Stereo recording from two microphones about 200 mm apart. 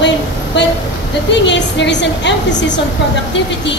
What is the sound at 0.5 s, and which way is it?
A woman's voice, 60° left (ahead or behind).